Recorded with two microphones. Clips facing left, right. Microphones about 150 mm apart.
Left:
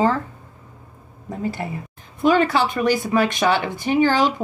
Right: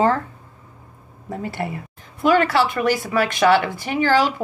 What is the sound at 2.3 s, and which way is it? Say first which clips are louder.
A woman's voice: right 3 dB; 20° left (ahead or behind).